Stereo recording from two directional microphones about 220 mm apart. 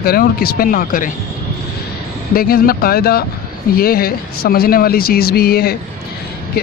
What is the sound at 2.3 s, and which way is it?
A man's voice, 45° left (ahead or behind).